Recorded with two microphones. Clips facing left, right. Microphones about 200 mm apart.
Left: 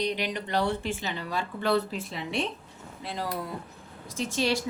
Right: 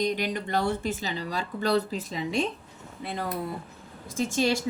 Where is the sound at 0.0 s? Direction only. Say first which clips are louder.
Right 2 dB; 45° right (ahead or behind).